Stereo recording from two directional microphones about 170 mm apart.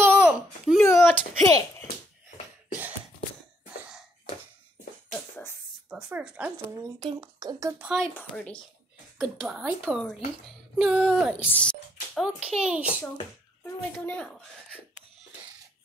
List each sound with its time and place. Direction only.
0.0 s babbling: 5° right (ahead or behind)
0.8 s a sound: 15° left (ahead or behind)
5.3 s a sound: 15° left (ahead or behind)
5.9 s speech: 5° right (ahead or behind)
7.0 s speech: 25° right (ahead or behind)
7.8 s a woman's voice: 5° right (ahead or behind)
9.2 s speech: 5° right (ahead or behind)
11.5 s a child's voice: 5° left (ahead or behind)
13.9 s speech: 5° left (ahead or behind)